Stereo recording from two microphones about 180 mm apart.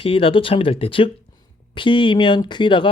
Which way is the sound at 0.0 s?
30° left (ahead or behind).